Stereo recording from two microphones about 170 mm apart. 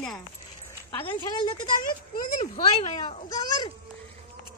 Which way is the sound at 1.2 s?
25° left (ahead or behind).